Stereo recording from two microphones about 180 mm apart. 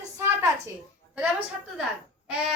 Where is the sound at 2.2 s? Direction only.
Centre (ahead or behind).